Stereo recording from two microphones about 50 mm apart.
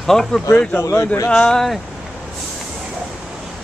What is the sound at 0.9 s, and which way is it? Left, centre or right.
Speech, left.